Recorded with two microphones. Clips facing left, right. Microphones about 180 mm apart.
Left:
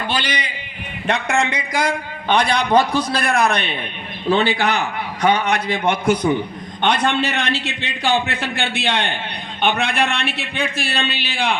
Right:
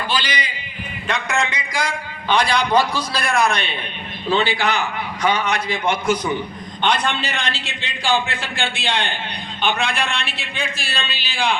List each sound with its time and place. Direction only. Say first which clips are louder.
0.1 s a man's voice: left 1 dB; 60° left (ahead or behind)